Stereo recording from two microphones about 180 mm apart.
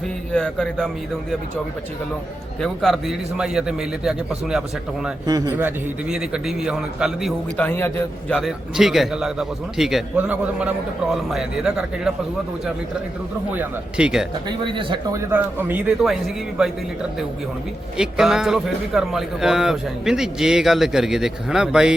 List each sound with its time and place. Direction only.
0.3 s a man's voice: 5° left (ahead or behind)
2.6 s a man's voice: centre (ahead or behind)
5.2 s speech: 20° right (ahead or behind)
5.6 s a man's voice: 5° right (ahead or behind); by 8.4 s 10° left (ahead or behind)
8.4 s a man's voice: centre (ahead or behind)
13.6 s a man's voice: 5° right (ahead or behind)
14.4 s speech: 25° right (ahead or behind)
15.2 s speech: 10° right (ahead or behind)
17.9 s a man's voice: 5° right (ahead or behind)